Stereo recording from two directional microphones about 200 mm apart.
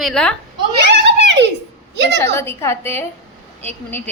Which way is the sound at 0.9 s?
60° right (ahead or behind).